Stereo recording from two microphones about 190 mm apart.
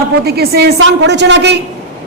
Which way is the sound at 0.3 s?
55° right (ahead or behind).